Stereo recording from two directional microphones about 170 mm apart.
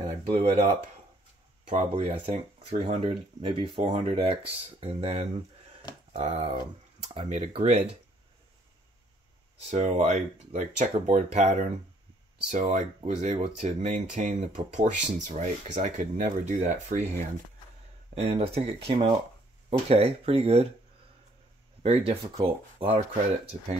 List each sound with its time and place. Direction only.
0.0 s a sound: 35° right (ahead or behind)
1.7 s speech: 45° right (ahead or behind)
9.7 s speech: 45° right (ahead or behind)
18.2 s speech: 35° right (ahead or behind)
21.8 s speech: 35° right (ahead or behind)